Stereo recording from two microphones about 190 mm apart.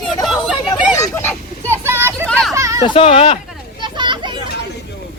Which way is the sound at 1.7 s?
10° right (ahead or behind).